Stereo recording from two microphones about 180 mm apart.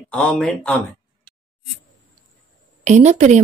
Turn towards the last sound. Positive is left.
turn(degrees=-40)  # may be behind; listen again after turning